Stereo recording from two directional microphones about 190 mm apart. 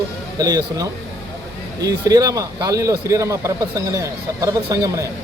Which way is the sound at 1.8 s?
20° right (ahead or behind).